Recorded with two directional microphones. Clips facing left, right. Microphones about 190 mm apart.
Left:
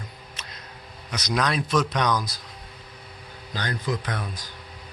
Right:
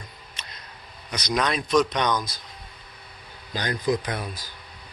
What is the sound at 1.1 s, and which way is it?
Speech, centre (ahead or behind).